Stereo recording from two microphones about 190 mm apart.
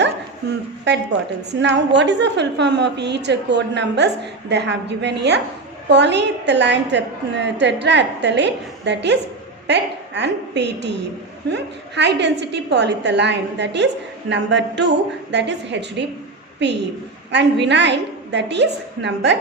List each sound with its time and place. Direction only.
0.9 s a woman's voice: 65° right (ahead or behind)